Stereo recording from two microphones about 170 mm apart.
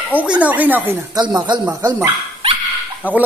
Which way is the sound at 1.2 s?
25° right (ahead or behind).